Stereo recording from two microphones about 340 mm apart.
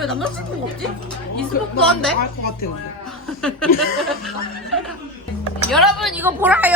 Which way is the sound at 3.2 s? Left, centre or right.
Centre.